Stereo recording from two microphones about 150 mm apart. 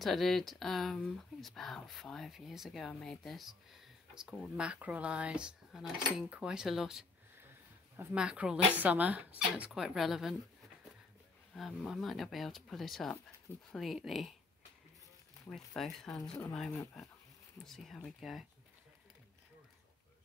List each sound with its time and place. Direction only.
0.0 s speech: centre (ahead or behind)
11.5 s speech: centre (ahead or behind)
15.5 s speech: 5° left (ahead or behind)
16.2 s speech: 20° left (ahead or behind)
17.6 s speech: centre (ahead or behind)